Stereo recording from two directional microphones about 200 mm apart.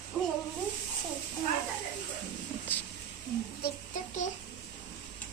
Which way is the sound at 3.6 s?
40° left (ahead or behind).